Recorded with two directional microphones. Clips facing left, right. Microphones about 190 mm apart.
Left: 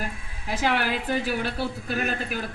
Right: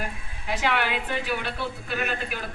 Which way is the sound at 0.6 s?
40° left (ahead or behind).